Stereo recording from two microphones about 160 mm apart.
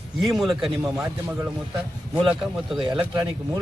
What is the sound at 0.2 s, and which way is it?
Speech, centre (ahead or behind).